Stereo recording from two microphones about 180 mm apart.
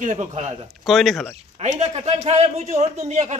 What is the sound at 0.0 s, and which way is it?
Speech, 45° right (ahead or behind).